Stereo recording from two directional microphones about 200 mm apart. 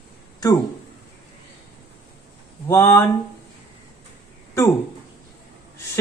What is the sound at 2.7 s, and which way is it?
Speech, 15° left (ahead or behind).